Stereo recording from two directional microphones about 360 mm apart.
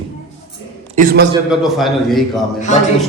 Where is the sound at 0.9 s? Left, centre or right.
Right.